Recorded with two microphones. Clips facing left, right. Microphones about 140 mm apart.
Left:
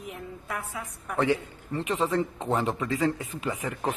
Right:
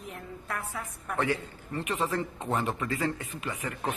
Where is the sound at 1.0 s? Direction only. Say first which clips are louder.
Left 4 dB; centre (ahead or behind).